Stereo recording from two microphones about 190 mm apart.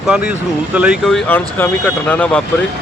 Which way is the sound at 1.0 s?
5° left (ahead or behind).